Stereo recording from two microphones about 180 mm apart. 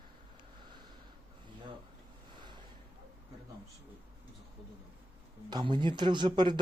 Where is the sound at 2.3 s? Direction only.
25° right (ahead or behind).